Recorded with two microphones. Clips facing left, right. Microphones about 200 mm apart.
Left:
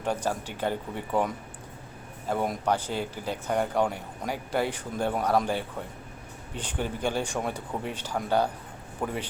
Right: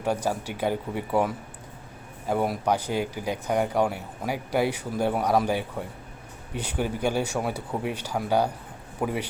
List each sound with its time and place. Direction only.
0.0 s a man's voice: 10° right (ahead or behind)